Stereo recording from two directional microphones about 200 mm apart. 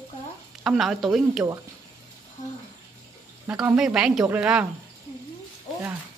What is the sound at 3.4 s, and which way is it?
Speech, 5° right (ahead or behind).